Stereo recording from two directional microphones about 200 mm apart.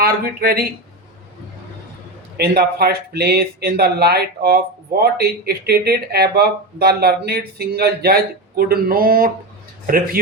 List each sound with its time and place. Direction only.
0.0 s speech: 50° right (ahead or behind)
2.4 s speech: 50° right (ahead or behind)